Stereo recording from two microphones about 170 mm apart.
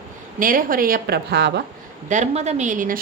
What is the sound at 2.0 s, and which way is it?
Speech, 45° right (ahead or behind).